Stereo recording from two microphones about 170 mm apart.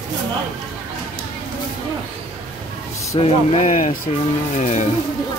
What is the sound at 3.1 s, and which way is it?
Speech, 40° left (ahead or behind).